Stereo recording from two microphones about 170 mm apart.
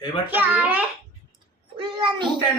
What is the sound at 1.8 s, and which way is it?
Speech, 30° right (ahead or behind).